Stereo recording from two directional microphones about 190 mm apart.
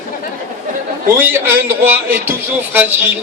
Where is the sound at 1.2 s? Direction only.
10° right (ahead or behind).